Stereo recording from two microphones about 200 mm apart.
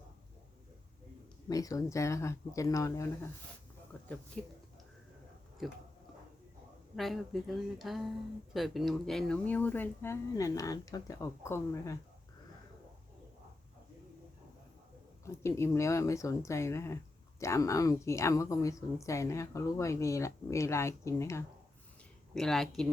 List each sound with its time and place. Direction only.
1.5 s a woman's voice: 15° left (ahead or behind)
3.9 s a sound: 5° left (ahead or behind)
4.4 s speech: 5° left (ahead or behind)
5.6 s speech: centre (ahead or behind)
6.9 s a woman's voice: centre (ahead or behind)
15.2 s a woman's voice: 15° left (ahead or behind)
22.4 s speech: centre (ahead or behind)